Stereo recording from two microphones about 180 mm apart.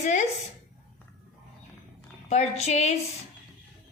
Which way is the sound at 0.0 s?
40° left (ahead or behind).